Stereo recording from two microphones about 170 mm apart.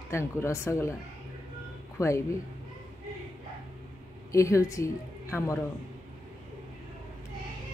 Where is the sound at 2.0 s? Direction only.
15° left (ahead or behind).